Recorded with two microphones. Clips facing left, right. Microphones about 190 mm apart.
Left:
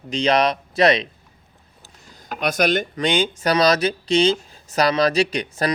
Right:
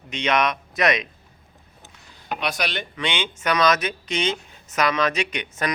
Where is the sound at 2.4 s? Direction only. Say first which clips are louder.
Left 9 dB; 45° left (ahead or behind).